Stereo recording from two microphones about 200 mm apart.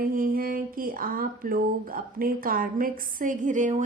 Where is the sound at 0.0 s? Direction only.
45° right (ahead or behind).